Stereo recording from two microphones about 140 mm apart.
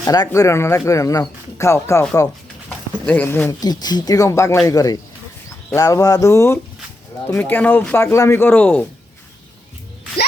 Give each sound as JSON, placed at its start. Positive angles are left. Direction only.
{"t": 0.0, "sound": "speech", "side_deg": 25}
{"t": 3.6, "sound": "speech", "side_deg": 30}